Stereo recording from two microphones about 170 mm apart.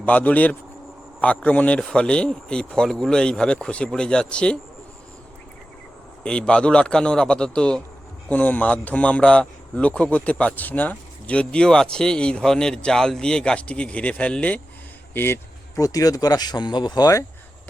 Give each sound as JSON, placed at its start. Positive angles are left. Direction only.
{"t": 0.0, "sound": "speech", "side_deg": 10}
{"t": 6.2, "sound": "speech", "side_deg": 5}